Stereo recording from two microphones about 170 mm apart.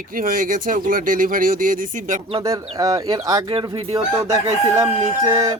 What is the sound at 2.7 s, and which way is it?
Speech, 20° right (ahead or behind).